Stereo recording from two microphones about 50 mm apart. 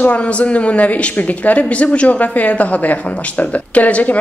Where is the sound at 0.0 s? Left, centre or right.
Left.